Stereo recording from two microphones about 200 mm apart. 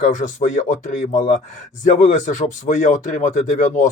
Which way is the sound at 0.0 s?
40° left (ahead or behind).